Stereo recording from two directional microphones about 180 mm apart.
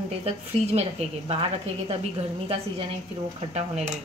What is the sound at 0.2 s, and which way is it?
Speech, 35° right (ahead or behind).